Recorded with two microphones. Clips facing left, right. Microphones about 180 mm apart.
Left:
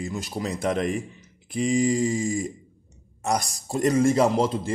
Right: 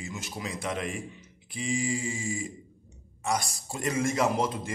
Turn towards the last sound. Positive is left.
turn(degrees=30)  # may be behind; listen again after turning